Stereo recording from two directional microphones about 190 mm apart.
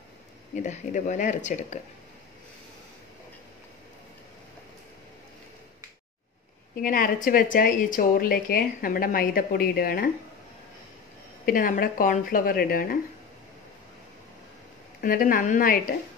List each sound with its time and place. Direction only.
0.6 s speech: 40° left (ahead or behind)
6.8 s speech: 45° left (ahead or behind)
11.4 s speech: 45° left (ahead or behind)
15.0 s speech: 50° left (ahead or behind)